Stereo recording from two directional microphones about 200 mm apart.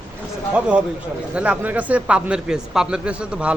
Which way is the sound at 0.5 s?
5° right (ahead or behind).